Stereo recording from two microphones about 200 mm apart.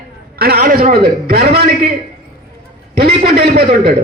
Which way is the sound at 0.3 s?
50° right (ahead or behind).